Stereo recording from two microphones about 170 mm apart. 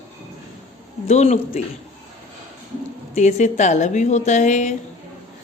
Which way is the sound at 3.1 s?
45° left (ahead or behind).